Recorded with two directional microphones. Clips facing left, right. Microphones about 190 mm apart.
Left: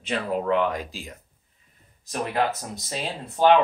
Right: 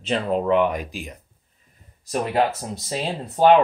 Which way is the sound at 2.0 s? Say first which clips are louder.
Right 4 dB; 30° right (ahead or behind).